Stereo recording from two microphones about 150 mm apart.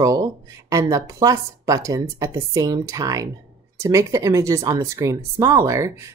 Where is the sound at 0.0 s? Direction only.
20° right (ahead or behind).